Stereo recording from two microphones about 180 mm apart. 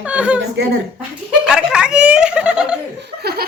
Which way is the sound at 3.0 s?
65° right (ahead or behind).